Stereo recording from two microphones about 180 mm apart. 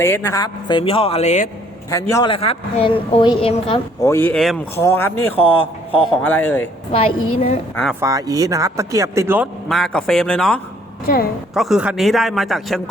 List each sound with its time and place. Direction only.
0.0 s speech: 15° left (ahead or behind); by 1.5 s 40° left (ahead or behind)
1.9 s speech: 15° left (ahead or behind)
2.3 s a woman's voice: 30° left (ahead or behind)
4.0 s speech: 15° left (ahead or behind)
6.9 s a woman's voice: 35° left (ahead or behind)
8.0 s speech: 20° right (ahead or behind)
9.6 s a man's voice: centre (ahead or behind)
11.0 s a woman's voice: 55° left (ahead or behind)
11.5 s a man's voice: centre (ahead or behind)